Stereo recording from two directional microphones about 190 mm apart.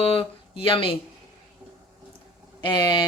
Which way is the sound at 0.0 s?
30° left (ahead or behind).